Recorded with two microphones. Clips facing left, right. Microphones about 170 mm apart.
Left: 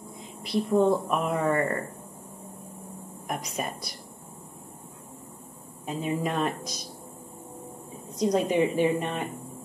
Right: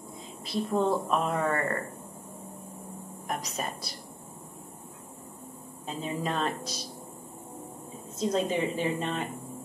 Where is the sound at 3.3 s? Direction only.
10° left (ahead or behind).